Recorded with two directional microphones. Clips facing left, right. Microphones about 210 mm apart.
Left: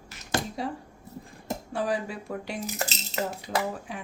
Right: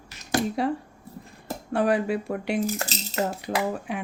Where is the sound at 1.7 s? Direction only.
65° right (ahead or behind).